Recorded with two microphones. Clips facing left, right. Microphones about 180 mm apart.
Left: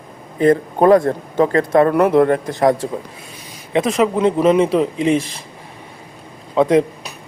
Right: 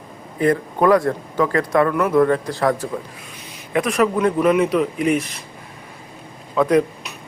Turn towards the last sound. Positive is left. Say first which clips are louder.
# left 3 dB
turn(degrees=25)  # may be behind; listen again after turning